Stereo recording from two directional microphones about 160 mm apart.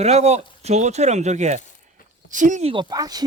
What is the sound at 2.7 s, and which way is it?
Speech, 25° right (ahead or behind).